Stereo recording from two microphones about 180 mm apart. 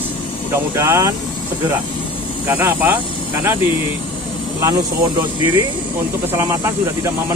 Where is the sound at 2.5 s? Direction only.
10° right (ahead or behind).